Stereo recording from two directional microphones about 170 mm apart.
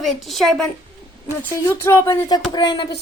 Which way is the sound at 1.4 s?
15° left (ahead or behind).